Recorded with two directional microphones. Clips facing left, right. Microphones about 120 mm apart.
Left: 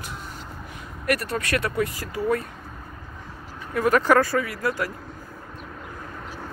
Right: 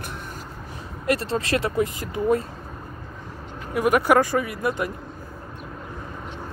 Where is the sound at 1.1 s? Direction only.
25° right (ahead or behind).